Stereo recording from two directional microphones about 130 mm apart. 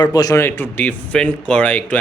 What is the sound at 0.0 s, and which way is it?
Speech, 30° left (ahead or behind).